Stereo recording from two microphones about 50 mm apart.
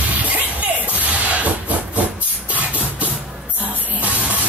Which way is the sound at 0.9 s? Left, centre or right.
Right.